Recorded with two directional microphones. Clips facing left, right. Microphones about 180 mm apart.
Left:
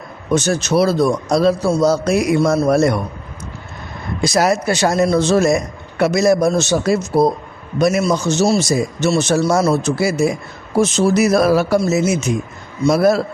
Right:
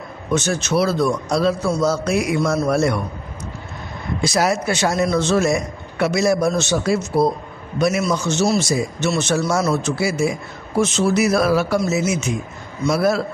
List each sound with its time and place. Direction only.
0.3 s a man's voice: 35° left (ahead or behind)
4.2 s a man's voice: 40° left (ahead or behind)